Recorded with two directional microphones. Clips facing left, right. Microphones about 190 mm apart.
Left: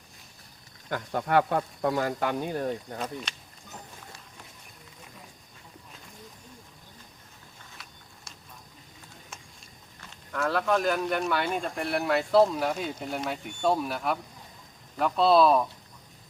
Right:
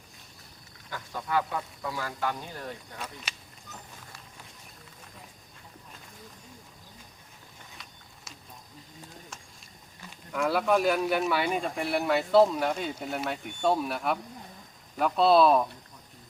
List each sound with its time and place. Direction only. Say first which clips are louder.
0.9 s speech: left 6 dB; 60° left (ahead or behind)
2.6 s speech: left 8 dB; 40° left (ahead or behind)
10.3 s speech: right 1 dB; 10° right (ahead or behind)